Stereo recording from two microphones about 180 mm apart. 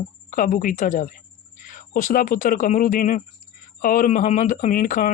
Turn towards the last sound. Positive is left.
turn(degrees=50)  # may be behind; listen again after turning